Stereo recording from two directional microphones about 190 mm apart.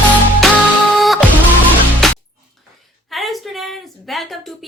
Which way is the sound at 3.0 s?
Centre (ahead or behind).